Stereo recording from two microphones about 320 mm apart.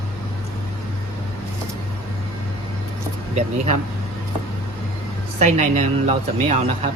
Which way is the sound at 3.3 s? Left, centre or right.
Centre.